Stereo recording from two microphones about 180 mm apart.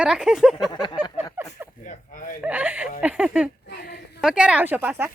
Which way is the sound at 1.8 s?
45° left (ahead or behind).